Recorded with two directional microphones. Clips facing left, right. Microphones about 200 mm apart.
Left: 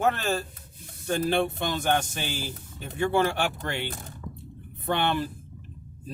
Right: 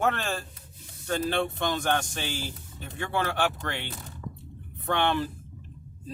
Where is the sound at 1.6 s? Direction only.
5° left (ahead or behind).